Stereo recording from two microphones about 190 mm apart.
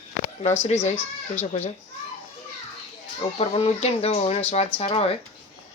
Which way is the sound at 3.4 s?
30° left (ahead or behind).